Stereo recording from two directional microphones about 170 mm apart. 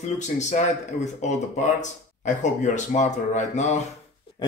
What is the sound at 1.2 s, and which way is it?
Speech, 45° left (ahead or behind).